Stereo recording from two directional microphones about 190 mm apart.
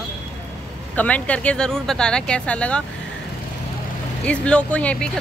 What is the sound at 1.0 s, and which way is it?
Speech, 5° left (ahead or behind).